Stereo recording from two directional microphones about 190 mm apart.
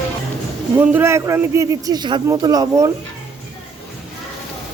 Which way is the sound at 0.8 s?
10° right (ahead or behind).